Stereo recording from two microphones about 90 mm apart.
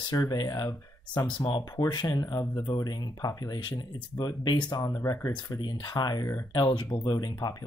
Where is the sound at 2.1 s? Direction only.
35° left (ahead or behind).